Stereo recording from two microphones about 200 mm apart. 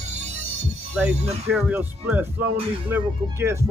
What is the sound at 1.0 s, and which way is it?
Speech, 5° right (ahead or behind).